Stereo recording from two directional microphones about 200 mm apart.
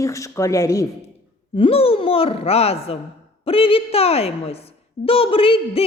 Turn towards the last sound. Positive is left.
turn(degrees=25)  # may be behind; listen again after turning